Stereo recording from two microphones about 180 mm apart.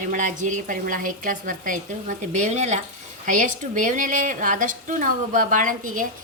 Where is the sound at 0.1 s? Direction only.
45° right (ahead or behind).